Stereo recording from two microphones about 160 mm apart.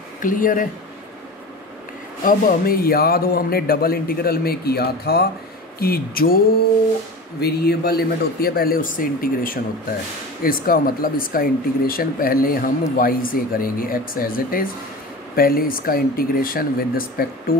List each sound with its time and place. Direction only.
0.2 s speech: 60° left (ahead or behind)
2.2 s a man's voice: 65° left (ahead or behind); by 5.2 s 80° left
5.8 s a man's voice: 70° left (ahead or behind)
7.3 s a man's voice: 90° left; by 17.6 s 65° left (ahead or behind)